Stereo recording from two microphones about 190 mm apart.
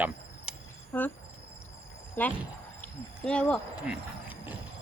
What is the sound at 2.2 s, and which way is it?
Speech, 10° left (ahead or behind).